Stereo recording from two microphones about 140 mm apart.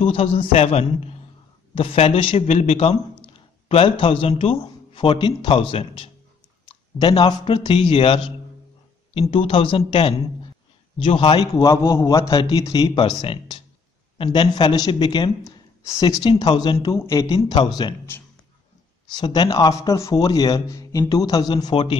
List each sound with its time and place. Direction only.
0.0 s a man's voice: 45° left (ahead or behind)
9.3 s a man's voice: 40° left (ahead or behind)
11.5 s a man's voice: 20° left (ahead or behind)
19.1 s speech: 30° left (ahead or behind)